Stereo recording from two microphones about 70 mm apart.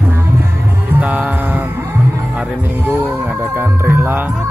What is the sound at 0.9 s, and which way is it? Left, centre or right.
Music, centre.